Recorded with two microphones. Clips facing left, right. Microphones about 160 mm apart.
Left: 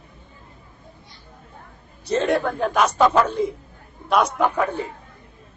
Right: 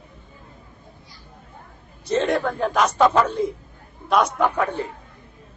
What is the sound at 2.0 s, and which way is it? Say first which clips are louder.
A man's voice: even; 5° left (ahead or behind).